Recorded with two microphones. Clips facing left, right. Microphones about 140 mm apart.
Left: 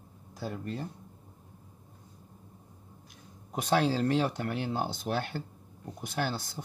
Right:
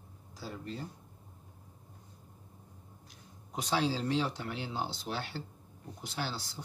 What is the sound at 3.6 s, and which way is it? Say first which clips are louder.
Speech: left 5 dB; 55° left (ahead or behind).